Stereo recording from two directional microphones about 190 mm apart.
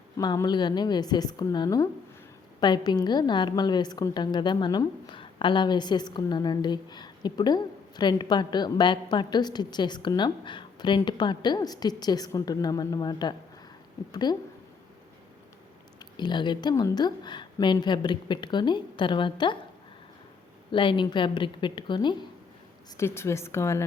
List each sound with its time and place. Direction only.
0.2 s a woman's voice: 20° left (ahead or behind)
16.1 s a woman's voice: 25° left (ahead or behind)
20.7 s a woman's voice: 25° left (ahead or behind)
23.0 s speech: 15° left (ahead or behind)